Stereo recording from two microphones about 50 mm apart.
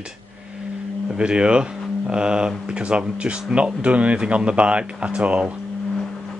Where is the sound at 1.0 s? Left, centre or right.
Centre.